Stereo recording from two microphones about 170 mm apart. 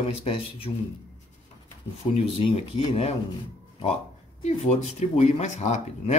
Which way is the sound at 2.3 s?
35° left (ahead or behind).